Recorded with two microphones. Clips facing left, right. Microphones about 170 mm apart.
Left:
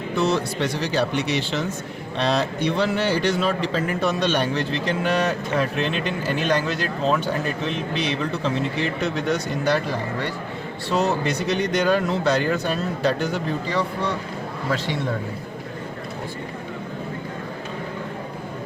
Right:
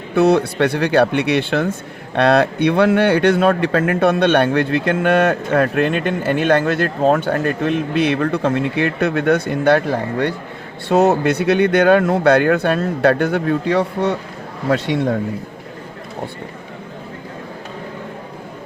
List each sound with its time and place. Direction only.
0.1 s a man's voice: 60° right (ahead or behind)